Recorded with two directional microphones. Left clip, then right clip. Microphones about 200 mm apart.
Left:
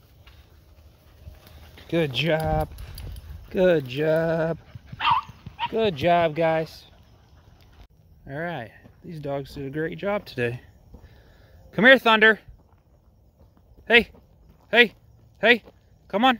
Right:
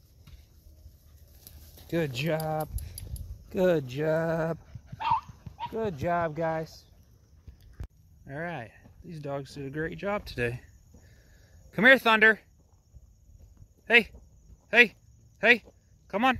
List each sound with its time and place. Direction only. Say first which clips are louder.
1.9 s speech: left 7 dB; centre (ahead or behind)
4.9 s dog: left 6 dB; 50° left (ahead or behind)
6.0 s speech: left 8 dB; 10° left (ahead or behind)
8.3 s speech: left 5 dB; 5° left (ahead or behind)
11.7 s speech: left 4 dB; 5° left (ahead or behind)
13.8 s speech: left 4 dB; 5° left (ahead or behind)
14.7 s a sound: left 3 dB; 5° left (ahead or behind)